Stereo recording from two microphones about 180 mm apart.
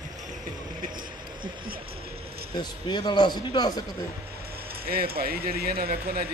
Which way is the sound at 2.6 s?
25° left (ahead or behind).